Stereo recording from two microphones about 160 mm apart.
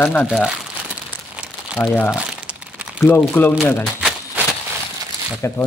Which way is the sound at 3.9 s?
5° right (ahead or behind).